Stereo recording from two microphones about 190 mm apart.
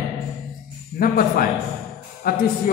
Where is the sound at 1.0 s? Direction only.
50° left (ahead or behind).